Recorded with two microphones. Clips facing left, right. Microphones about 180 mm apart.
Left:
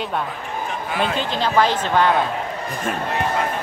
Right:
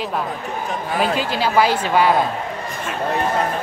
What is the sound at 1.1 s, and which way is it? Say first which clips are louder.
Speech: even; 5° right (ahead or behind).